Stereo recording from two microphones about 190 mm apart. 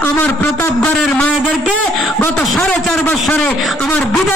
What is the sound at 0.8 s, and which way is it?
A man's voice, 5° left (ahead or behind).